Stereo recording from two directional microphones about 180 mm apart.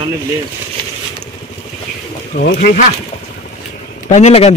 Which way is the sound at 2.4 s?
55° left (ahead or behind).